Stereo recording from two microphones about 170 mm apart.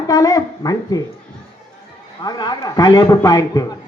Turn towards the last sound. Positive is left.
turn(degrees=20)  # may be behind; listen again after turning